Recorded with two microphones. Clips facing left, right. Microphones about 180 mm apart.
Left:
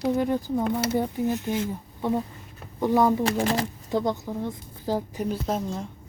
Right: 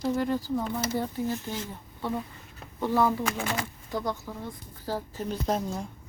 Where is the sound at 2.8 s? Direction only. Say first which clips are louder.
Left 4 dB; 15° left (ahead or behind).